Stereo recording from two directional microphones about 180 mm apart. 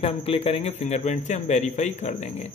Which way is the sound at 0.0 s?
30° left (ahead or behind).